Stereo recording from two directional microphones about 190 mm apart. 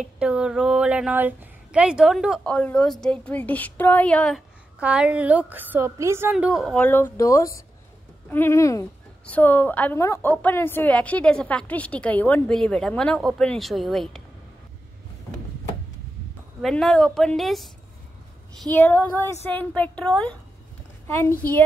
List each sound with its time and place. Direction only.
0.2 s a woman's voice: 5° right (ahead or behind)
4.7 s a woman's voice: 5° right (ahead or behind)
6.3 s a woman's voice: centre (ahead or behind)
16.6 s a woman's voice: 5° left (ahead or behind)